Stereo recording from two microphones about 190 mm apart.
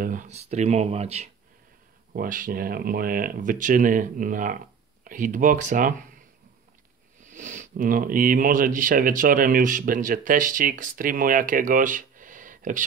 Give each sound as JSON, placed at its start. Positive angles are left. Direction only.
{"t": 0.0, "sound": "speech", "side_deg": -45}
{"t": 2.1, "sound": "speech", "side_deg": -45}
{"t": 7.2, "sound": "speech", "side_deg": -40}